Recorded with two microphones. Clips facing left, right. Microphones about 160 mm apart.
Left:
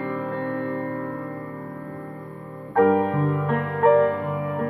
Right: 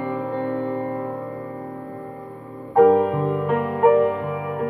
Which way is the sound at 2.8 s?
20° right (ahead or behind).